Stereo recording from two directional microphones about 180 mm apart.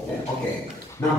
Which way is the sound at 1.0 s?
20° left (ahead or behind).